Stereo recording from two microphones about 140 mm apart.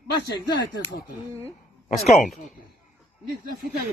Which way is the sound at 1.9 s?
Centre (ahead or behind).